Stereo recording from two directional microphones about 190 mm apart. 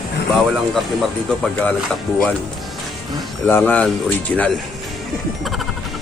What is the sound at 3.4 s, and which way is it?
Speech, 10° left (ahead or behind).